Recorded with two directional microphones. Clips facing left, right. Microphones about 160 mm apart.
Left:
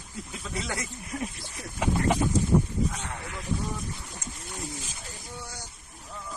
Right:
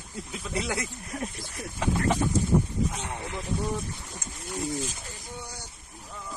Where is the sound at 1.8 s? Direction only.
15° left (ahead or behind).